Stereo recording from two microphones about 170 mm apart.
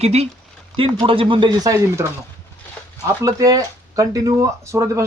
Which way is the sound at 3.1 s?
20° right (ahead or behind).